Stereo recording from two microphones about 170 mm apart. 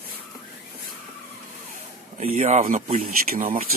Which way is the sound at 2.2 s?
40° right (ahead or behind).